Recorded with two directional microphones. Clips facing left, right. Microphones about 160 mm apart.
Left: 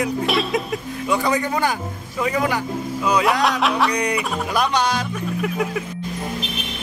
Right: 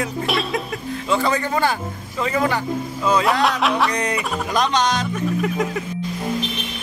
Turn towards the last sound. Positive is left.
turn(degrees=5)  # may be behind; listen again after turning